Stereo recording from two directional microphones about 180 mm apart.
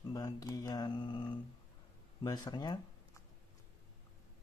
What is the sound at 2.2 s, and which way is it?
Speech, 20° left (ahead or behind).